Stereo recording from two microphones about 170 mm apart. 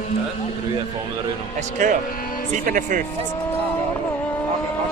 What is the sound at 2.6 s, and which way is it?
Speech, 55° right (ahead or behind).